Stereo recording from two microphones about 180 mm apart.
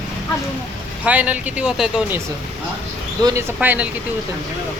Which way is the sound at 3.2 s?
15° right (ahead or behind).